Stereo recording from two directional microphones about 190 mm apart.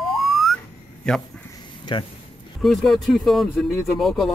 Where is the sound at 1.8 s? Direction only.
25° left (ahead or behind).